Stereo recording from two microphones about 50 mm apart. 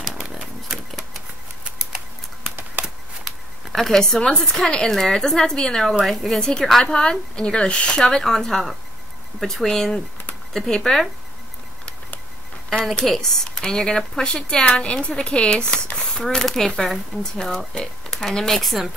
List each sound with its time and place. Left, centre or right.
2.4 s a sound: right
3.7 s a woman's voice: centre
6.4 s a woman's voice: centre
13.0 s speech: centre
18.6 s a woman's voice: centre